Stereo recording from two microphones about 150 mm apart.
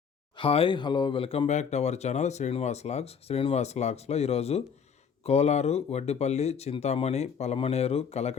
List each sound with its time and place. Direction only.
0.3 s speech: 40° left (ahead or behind)